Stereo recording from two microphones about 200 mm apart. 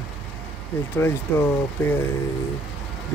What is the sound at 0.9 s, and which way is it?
Speech, 10° left (ahead or behind).